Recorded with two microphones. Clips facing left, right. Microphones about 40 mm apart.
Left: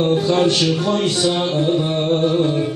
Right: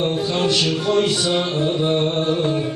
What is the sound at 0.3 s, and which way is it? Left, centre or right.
Music, left.